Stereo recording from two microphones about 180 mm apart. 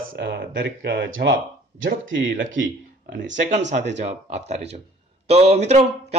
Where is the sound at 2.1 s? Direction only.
90° right.